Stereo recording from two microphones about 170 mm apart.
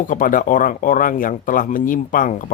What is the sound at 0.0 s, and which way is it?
Speech, 50° left (ahead or behind).